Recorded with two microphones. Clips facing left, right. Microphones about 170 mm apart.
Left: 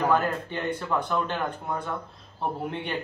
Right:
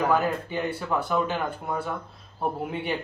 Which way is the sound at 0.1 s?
10° right (ahead or behind).